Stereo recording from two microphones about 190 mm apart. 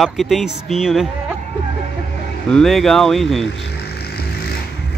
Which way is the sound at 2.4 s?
5° left (ahead or behind).